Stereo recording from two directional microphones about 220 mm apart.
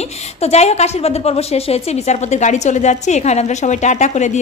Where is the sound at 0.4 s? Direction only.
30° left (ahead or behind).